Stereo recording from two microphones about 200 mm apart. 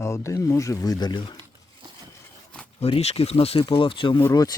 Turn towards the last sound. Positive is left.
turn(degrees=15)  # may be behind; listen again after turning